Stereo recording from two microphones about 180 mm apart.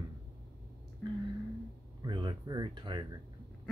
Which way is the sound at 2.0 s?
25° right (ahead or behind).